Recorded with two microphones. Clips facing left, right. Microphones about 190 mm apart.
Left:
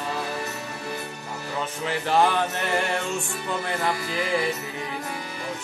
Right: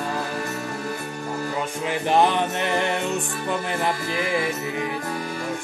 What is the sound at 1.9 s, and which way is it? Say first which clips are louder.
Music: right 2 dB; 20° right (ahead or behind).